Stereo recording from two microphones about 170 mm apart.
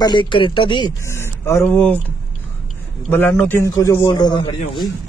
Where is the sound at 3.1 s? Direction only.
10° left (ahead or behind); by 4.5 s 25° left (ahead or behind).